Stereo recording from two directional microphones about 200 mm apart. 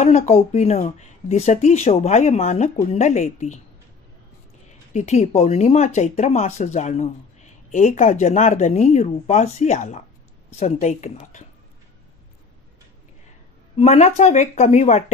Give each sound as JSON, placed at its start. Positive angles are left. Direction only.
{"t": 0.0, "sound": "speech", "side_deg": 35}
{"t": 4.9, "sound": "speech", "side_deg": 35}
{"t": 13.7, "sound": "speech", "side_deg": 35}